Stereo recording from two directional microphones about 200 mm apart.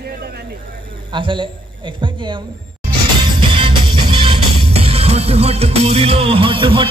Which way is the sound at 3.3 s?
25° right (ahead or behind).